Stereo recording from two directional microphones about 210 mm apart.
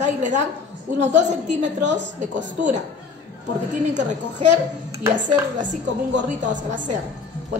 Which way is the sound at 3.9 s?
35° right (ahead or behind).